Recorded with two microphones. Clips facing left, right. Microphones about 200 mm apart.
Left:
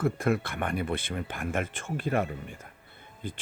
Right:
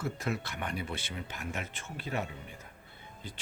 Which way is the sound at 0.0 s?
55° left (ahead or behind).